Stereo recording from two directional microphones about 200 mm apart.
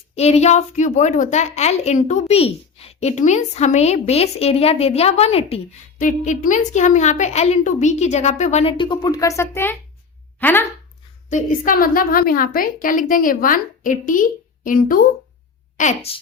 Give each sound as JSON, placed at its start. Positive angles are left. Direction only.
{"t": 0.2, "sound": "a woman's voice", "side_deg": 30}
{"t": 11.3, "sound": "a woman's voice", "side_deg": 40}
{"t": 15.8, "sound": "a woman's voice", "side_deg": 35}